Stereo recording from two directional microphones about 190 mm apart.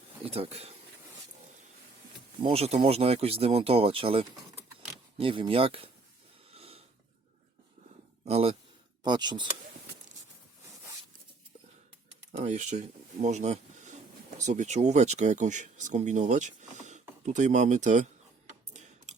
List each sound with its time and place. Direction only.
0.3 s speech: 30° right (ahead or behind)
2.4 s speech: 30° right (ahead or behind)
6.5 s a sound: 30° right (ahead or behind)
8.2 s speech: 30° right (ahead or behind)
12.4 s speech: 40° right (ahead or behind)
18.7 s typing: 40° right (ahead or behind)